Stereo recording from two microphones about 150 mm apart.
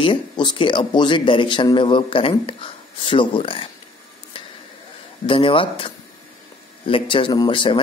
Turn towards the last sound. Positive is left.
turn(degrees=35)  # may be behind; listen again after turning